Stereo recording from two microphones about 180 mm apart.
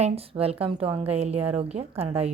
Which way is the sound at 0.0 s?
35° right (ahead or behind).